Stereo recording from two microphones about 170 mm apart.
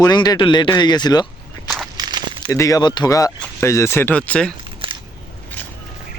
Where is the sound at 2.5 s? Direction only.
20° left (ahead or behind).